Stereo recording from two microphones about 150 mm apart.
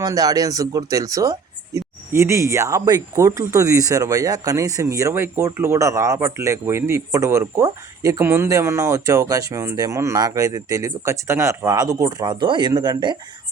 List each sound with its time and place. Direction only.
0.0 s speech: 25° right (ahead or behind)